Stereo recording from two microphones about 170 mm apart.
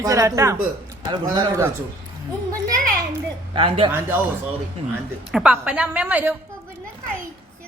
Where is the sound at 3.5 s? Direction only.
30° right (ahead or behind).